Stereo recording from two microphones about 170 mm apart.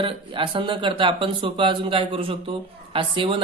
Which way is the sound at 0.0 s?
30° right (ahead or behind).